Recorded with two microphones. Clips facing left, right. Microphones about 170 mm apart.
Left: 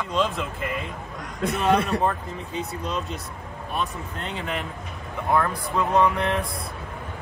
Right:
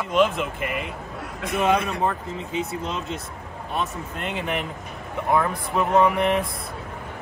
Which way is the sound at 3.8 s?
15° right (ahead or behind).